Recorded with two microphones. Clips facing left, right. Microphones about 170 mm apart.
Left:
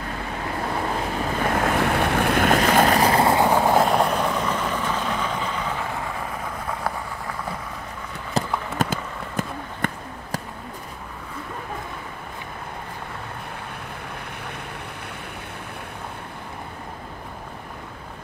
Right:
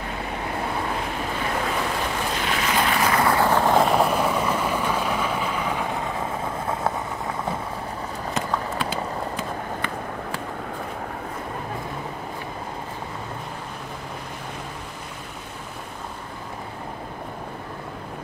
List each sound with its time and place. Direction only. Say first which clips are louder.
1.6 s boat: left 6 dB; 65° left (ahead or behind); by 3.4 s 25° left (ahead or behind)
3.4 s vehicle: left 1 dB; 10° left (ahead or behind); by 6.2 s 20° right (ahead or behind)
8.4 s run: left 3 dB; 45° left (ahead or behind)